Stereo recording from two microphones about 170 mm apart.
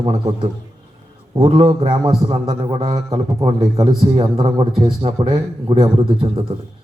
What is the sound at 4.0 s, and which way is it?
A man's voice, 30° right (ahead or behind).